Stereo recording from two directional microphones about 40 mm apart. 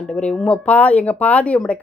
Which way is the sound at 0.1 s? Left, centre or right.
Left.